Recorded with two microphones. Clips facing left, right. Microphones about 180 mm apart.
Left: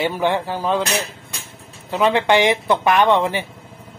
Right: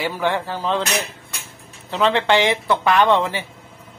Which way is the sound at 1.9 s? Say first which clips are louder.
Left 1 dB; 15° left (ahead or behind).